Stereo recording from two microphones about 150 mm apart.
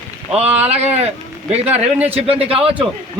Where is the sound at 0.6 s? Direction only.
45° right (ahead or behind).